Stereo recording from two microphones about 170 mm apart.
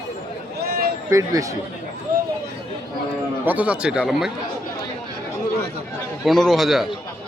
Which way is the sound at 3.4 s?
10° right (ahead or behind).